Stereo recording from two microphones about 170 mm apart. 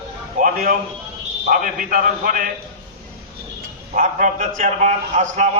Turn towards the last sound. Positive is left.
turn(degrees=-45)  # may be behind; listen again after turning